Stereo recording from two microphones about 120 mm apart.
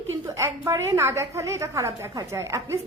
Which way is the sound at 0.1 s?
20° right (ahead or behind).